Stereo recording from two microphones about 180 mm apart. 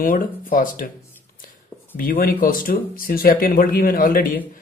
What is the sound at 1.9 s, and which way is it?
Speech, 50° left (ahead or behind).